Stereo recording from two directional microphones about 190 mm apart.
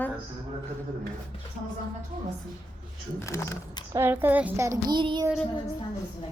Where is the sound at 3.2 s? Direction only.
15° left (ahead or behind).